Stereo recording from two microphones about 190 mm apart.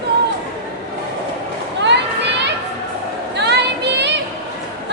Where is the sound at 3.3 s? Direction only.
65° right (ahead or behind).